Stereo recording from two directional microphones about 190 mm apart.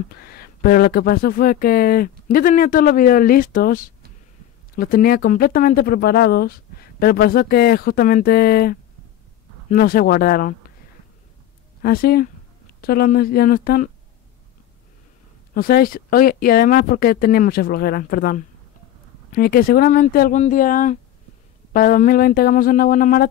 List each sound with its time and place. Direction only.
0.2 s speech: 55° left (ahead or behind)
11.8 s speech: 55° left (ahead or behind)
15.5 s speech: 50° left (ahead or behind)